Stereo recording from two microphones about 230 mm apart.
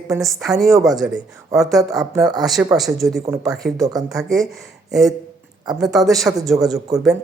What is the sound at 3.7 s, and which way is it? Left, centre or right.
Speech, centre.